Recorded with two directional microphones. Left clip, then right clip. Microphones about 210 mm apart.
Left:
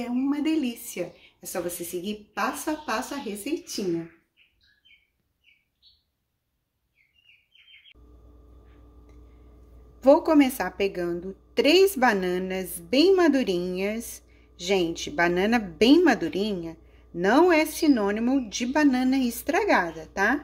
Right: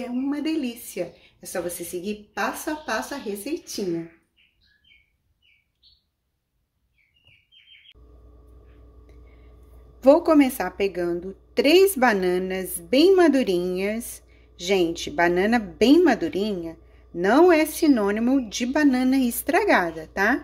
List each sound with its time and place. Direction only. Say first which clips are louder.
0.0 s a woman's voice: even; 5° left (ahead or behind)
9.9 s a woman's voice: right 2 dB; 5° right (ahead or behind)